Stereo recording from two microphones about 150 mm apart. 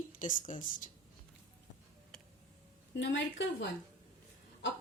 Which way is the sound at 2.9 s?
90° left.